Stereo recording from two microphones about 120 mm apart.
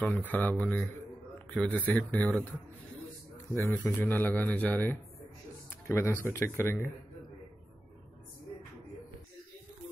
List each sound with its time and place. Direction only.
0.0 s a man's voice: 15° left (ahead or behind)
3.6 s a man's voice: 20° left (ahead or behind)